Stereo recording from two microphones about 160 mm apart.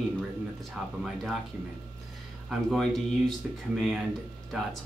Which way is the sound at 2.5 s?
Centre (ahead or behind).